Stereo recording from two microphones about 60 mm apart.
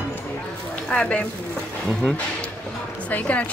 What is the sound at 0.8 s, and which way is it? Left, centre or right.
Speech, centre.